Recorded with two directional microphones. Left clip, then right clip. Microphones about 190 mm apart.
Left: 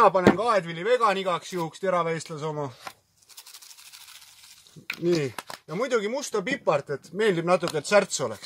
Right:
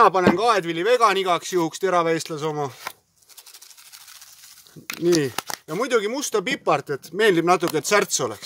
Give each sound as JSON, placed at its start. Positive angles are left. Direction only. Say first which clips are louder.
{"t": 0.4, "sound": "speech", "louder": "right 4 dB", "side_deg": -50}
{"t": 4.8, "sound": "speech", "louder": "right 5 dB", "side_deg": -50}